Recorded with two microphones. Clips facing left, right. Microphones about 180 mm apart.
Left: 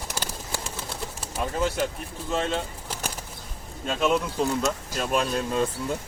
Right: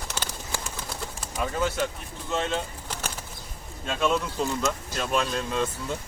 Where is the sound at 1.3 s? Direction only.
5° left (ahead or behind).